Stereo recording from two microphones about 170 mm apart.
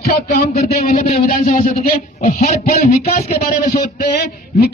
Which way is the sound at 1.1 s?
60° left (ahead or behind).